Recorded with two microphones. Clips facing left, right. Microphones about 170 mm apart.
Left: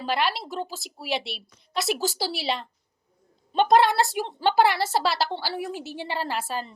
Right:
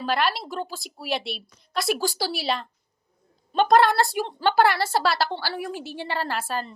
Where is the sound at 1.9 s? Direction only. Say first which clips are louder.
Right 2 dB; 20° left (ahead or behind).